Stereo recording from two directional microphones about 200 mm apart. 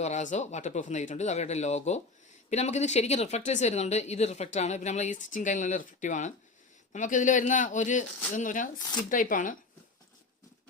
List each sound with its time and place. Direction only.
0.0 s speech: 35° left (ahead or behind)